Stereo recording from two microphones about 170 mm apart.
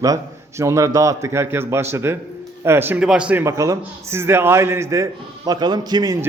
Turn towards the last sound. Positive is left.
turn(degrees=-25)  # may be behind; listen again after turning